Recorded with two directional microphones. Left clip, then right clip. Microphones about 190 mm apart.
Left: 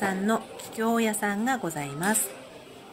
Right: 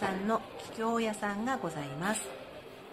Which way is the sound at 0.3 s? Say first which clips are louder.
Left 4 dB; 20° left (ahead or behind).